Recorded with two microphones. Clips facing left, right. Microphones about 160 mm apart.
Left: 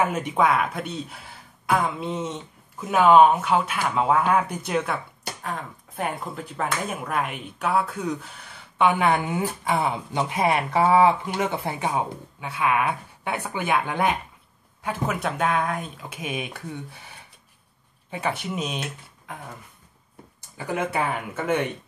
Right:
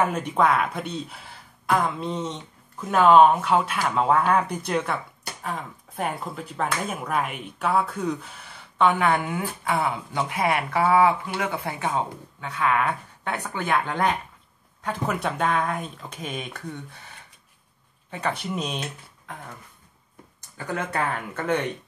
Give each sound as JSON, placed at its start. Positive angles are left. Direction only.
{"t": 0.0, "sound": "speech", "side_deg": 5}
{"t": 18.1, "sound": "speech", "side_deg": 5}
{"t": 20.5, "sound": "speech", "side_deg": 15}